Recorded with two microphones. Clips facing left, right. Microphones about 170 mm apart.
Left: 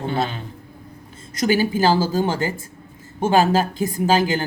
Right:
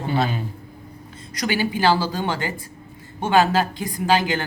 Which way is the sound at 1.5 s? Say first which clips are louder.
Left 2 dB; 40° left (ahead or behind).